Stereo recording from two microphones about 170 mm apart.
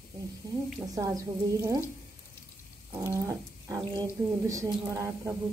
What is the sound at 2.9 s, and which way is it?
Speech, 20° right (ahead or behind).